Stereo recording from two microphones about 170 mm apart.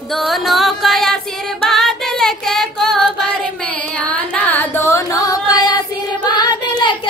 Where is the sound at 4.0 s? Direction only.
10° left (ahead or behind); by 6.9 s 25° left (ahead or behind).